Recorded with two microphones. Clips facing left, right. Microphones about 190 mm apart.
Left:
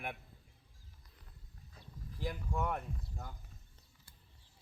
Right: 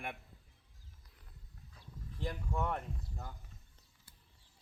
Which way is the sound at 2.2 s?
Centre (ahead or behind).